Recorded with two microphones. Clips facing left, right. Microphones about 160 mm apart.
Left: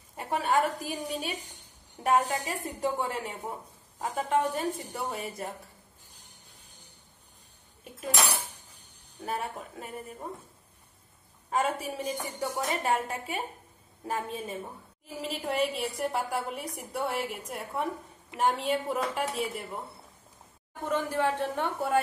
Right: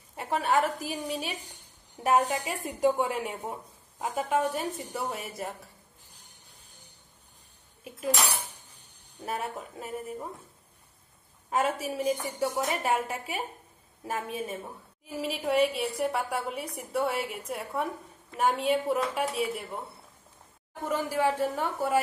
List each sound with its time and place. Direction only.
0.1 s a woman's voice: 5° right (ahead or behind)
9.2 s a woman's voice: centre (ahead or behind)
11.5 s a woman's voice: 5° right (ahead or behind)
20.9 s a woman's voice: 5° right (ahead or behind)